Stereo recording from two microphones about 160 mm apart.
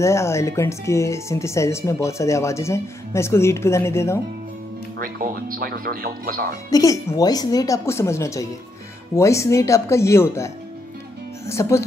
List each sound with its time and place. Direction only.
0.0 s speech: 15° left (ahead or behind)
4.9 s speech: 65° right (ahead or behind)
6.5 s speech: 20° left (ahead or behind)